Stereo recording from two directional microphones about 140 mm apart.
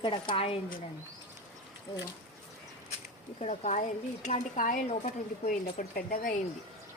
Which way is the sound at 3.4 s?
55° left (ahead or behind).